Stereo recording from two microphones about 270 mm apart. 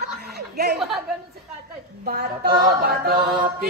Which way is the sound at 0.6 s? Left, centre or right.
Right.